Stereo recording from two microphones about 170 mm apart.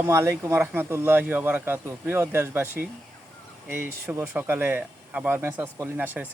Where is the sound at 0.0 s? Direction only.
15° right (ahead or behind).